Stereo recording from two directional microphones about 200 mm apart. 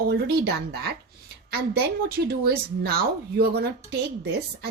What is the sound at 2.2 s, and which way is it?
Speech, 50° right (ahead or behind).